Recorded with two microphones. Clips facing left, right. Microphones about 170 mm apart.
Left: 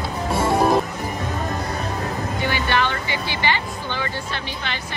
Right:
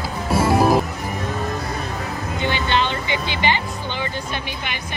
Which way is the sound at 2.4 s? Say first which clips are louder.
Right 1 dB; 20° right (ahead or behind).